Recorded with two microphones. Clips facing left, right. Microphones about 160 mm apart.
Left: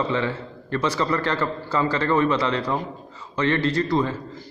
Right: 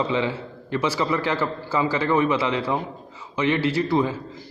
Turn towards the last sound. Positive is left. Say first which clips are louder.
# right 1 dB
turn(degrees=-5)  # may be behind; listen again after turning